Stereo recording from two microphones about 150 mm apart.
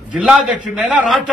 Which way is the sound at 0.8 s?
5° right (ahead or behind).